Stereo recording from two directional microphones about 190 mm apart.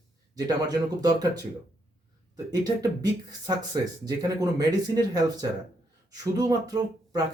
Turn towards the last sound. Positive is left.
turn(degrees=-20)  # may be behind; listen again after turning